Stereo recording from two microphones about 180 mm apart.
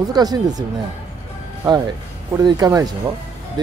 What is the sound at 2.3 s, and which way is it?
Speech, 20° right (ahead or behind).